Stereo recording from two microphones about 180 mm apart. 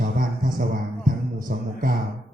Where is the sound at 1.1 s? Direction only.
50° right (ahead or behind).